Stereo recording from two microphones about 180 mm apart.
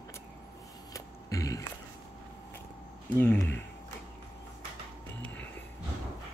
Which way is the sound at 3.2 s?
10° left (ahead or behind).